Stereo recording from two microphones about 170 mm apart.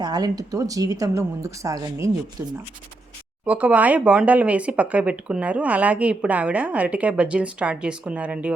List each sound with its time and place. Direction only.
0.0 s a woman's voice: 25° right (ahead or behind); by 8.5 s 5° right (ahead or behind)